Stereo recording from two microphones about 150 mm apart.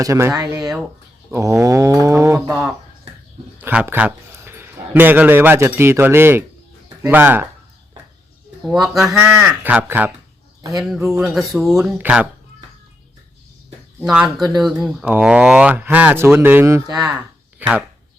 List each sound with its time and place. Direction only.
0.0 s livestock: 20° right (ahead or behind)
0.6 s speech: 5° right (ahead or behind)
1.3 s livestock: 20° right (ahead or behind)
2.5 s speech: centre (ahead or behind)
3.6 s a man's voice: 10° right (ahead or behind)
8.7 s speech: centre (ahead or behind)
14.0 s speech: 5° right (ahead or behind); by 17.2 s 25° right (ahead or behind)
17.6 s speech: 10° right (ahead or behind)